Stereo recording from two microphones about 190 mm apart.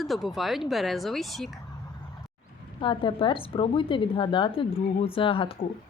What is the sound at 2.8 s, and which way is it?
Speech, 25° left (ahead or behind).